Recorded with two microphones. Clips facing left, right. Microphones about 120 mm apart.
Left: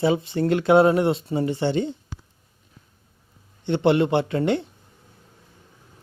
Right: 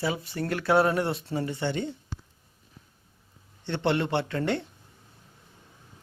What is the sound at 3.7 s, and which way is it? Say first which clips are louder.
Speech: left 7 dB; 15° left (ahead or behind).